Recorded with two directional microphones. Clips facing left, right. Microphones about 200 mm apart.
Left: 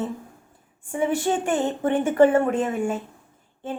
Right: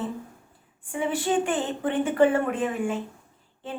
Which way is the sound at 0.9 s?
45° left (ahead or behind).